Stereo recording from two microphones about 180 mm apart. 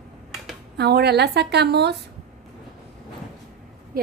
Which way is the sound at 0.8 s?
65° right (ahead or behind).